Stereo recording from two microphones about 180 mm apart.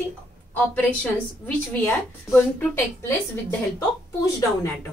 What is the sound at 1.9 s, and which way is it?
Speech, 10° left (ahead or behind).